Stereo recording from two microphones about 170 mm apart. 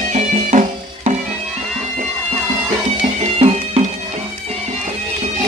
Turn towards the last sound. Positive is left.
turn(degrees=-35)  # may be behind; listen again after turning